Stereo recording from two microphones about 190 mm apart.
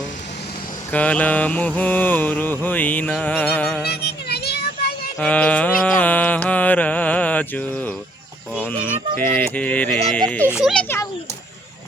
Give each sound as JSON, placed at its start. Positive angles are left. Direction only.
{"t": 0.9, "sound": "mantra", "side_deg": 5}
{"t": 3.8, "sound": "child singing", "side_deg": 60}
{"t": 5.2, "sound": "mantra", "side_deg": 5}
{"t": 8.6, "sound": "a child's voice", "side_deg": 10}
{"t": 10.8, "sound": "a sound", "side_deg": 15}